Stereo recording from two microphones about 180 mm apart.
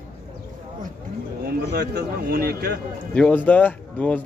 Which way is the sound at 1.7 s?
65° right (ahead or behind).